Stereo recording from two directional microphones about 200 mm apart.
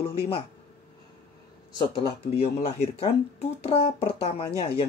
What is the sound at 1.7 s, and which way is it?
Speech, 25° left (ahead or behind).